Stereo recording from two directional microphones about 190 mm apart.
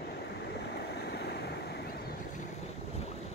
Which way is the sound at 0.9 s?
60° left (ahead or behind).